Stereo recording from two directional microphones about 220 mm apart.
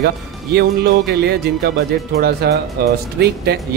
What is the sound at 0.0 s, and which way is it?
Speech, 45° right (ahead or behind).